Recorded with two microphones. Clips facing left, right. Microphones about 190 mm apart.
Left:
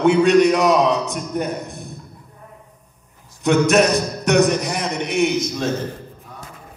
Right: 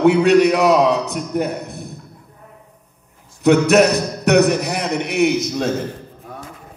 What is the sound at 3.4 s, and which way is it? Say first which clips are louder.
Music: right 3 dB; 65° right (ahead or behind).